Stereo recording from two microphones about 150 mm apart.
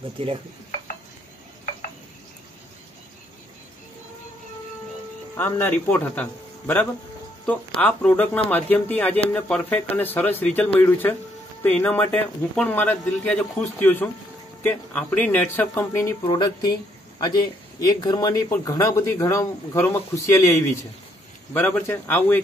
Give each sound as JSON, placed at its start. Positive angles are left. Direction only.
{"t": 0.2, "sound": "stir", "side_deg": -40}
{"t": 5.3, "sound": "a man's voice", "side_deg": 15}
{"t": 7.8, "sound": "a man's voice", "side_deg": 10}
{"t": 16.3, "sound": "speech", "side_deg": 25}
{"t": 17.7, "sound": "a man's voice", "side_deg": 25}